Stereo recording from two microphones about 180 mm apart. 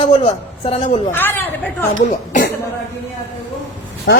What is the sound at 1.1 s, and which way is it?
Speech, 10° left (ahead or behind).